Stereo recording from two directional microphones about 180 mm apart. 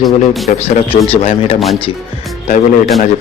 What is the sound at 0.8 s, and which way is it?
Speech, 30° left (ahead or behind).